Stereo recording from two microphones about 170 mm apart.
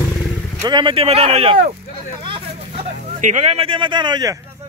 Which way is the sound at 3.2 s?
45° right (ahead or behind).